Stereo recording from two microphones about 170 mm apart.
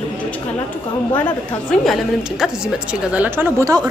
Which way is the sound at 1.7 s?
Centre (ahead or behind).